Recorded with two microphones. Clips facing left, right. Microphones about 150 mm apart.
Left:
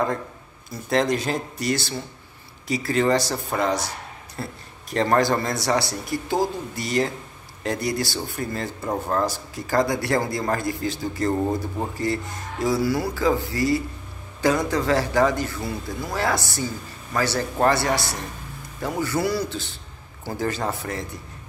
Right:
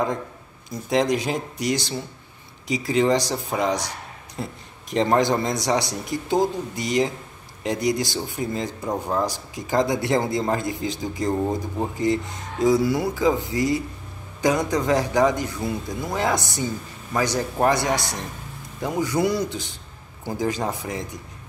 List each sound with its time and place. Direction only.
0.7 s a man's voice: 15° right (ahead or behind)